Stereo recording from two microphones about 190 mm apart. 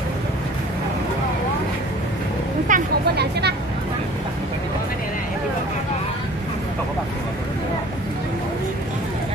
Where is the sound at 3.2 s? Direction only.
60° right (ahead or behind).